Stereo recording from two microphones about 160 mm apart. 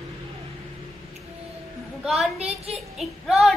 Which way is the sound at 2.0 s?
Centre (ahead or behind).